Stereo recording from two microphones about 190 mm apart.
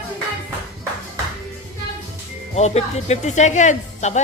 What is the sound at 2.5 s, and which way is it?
Speech, 35° left (ahead or behind).